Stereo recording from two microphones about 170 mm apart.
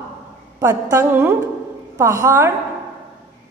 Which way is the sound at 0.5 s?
15° right (ahead or behind).